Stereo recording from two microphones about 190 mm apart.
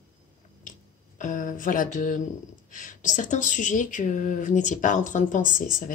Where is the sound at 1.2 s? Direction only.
45° left (ahead or behind).